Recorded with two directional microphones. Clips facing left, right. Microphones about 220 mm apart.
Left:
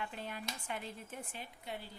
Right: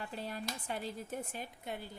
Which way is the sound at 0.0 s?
35° right (ahead or behind).